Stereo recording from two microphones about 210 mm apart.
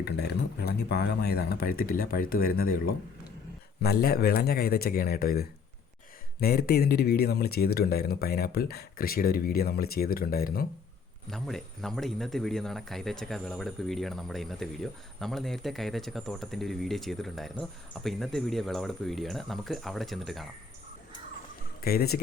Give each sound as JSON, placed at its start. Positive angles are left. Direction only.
{"t": 0.0, "sound": "speech", "side_deg": 50}
{"t": 11.3, "sound": "speech", "side_deg": 0}
{"t": 21.8, "sound": "speech", "side_deg": 45}